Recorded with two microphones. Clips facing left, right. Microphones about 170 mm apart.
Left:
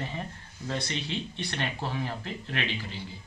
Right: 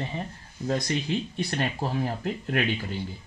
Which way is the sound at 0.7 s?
40° right (ahead or behind).